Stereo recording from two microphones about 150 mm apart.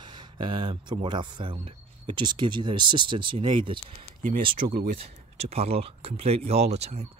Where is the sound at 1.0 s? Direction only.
30° right (ahead or behind).